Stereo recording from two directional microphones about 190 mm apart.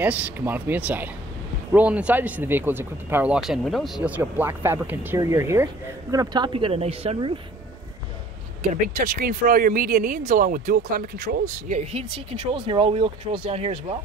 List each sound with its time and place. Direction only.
0.0 s speech: 10° right (ahead or behind)
4.2 s speech: 10° right (ahead or behind); by 7.3 s 30° right (ahead or behind)
8.8 s speech: 45° right (ahead or behind); by 13.7 s 30° right (ahead or behind)